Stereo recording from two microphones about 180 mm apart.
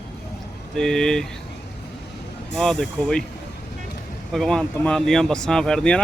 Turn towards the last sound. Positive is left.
turn(degrees=5)  # may be behind; listen again after turning